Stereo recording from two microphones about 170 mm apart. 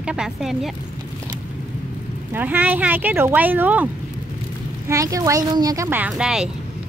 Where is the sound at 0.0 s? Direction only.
5° right (ahead or behind).